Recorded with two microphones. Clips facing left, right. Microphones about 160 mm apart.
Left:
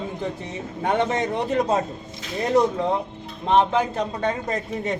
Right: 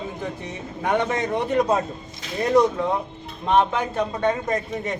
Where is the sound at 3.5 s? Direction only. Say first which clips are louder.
Left 1 dB; 30° left (ahead or behind).